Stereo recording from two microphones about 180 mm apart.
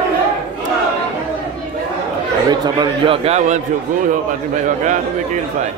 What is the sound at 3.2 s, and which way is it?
Speech, 40° right (ahead or behind).